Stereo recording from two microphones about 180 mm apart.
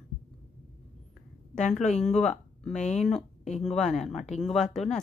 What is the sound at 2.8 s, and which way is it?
Speech, 40° left (ahead or behind).